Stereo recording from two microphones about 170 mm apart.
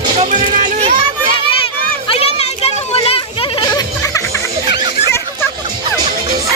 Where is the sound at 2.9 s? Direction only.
35° left (ahead or behind).